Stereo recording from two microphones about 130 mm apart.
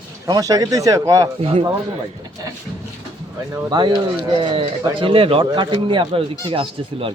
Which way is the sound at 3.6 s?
35° right (ahead or behind).